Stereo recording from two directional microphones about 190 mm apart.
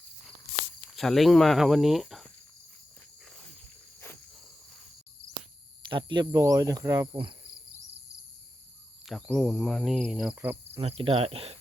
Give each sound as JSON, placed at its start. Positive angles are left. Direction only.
{"t": 0.9, "sound": "speech", "side_deg": 0}
{"t": 5.9, "sound": "cricket", "side_deg": -25}
{"t": 9.0, "sound": "speech", "side_deg": 0}
{"t": 10.3, "sound": "cricket", "side_deg": -10}
{"t": 10.8, "sound": "cricket", "side_deg": -30}